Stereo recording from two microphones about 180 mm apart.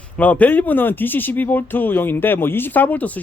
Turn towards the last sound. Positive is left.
turn(degrees=10)  # may be behind; listen again after turning